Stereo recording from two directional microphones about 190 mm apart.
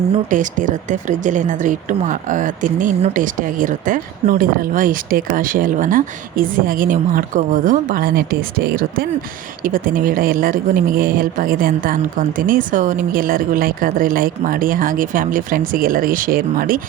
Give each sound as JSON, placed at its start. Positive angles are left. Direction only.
{"t": 0.3, "sound": "speech", "side_deg": -40}